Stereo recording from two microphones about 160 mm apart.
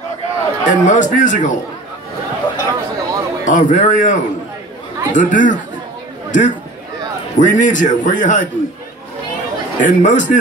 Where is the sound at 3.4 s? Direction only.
50° left (ahead or behind).